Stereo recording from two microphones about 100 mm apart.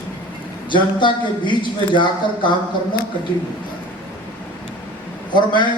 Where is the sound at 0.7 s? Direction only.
50° left (ahead or behind).